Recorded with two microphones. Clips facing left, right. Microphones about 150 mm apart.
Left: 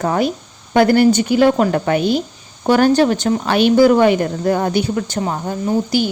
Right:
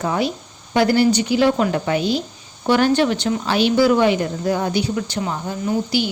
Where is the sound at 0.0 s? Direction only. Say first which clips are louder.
Left 4 dB; 50° left (ahead or behind).